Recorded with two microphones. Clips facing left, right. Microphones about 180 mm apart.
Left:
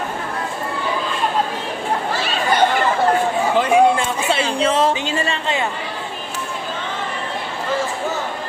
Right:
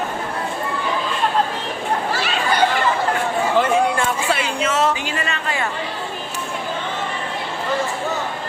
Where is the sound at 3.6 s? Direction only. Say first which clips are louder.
Left 4 dB; 20° left (ahead or behind).